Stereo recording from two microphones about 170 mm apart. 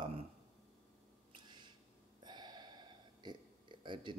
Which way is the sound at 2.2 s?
25° right (ahead or behind).